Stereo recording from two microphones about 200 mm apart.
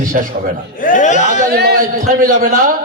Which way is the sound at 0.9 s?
40° left (ahead or behind).